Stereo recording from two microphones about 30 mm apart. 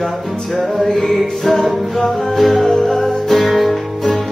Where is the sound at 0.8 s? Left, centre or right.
Centre.